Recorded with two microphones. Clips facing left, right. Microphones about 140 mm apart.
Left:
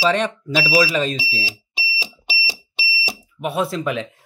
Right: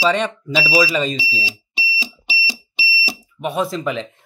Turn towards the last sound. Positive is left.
turn(degrees=5)  # may be behind; listen again after turning